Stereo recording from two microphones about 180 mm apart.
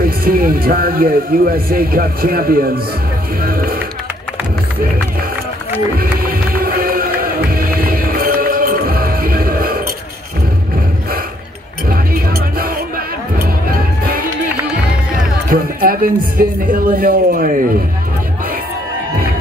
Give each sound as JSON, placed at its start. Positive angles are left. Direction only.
{"t": 0.0, "sound": "speech", "side_deg": -55}
{"t": 3.4, "sound": "a sound", "side_deg": -55}
{"t": 6.2, "sound": "music", "side_deg": -55}
{"t": 11.9, "sound": "music", "side_deg": -55}
{"t": 15.5, "sound": "a man's voice", "side_deg": -55}